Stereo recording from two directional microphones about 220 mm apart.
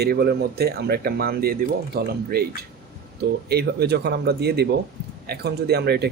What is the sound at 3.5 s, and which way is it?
Speech, 45° right (ahead or behind).